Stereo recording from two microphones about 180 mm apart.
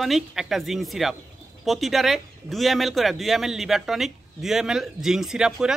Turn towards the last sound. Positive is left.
turn(degrees=-5)  # may be behind; listen again after turning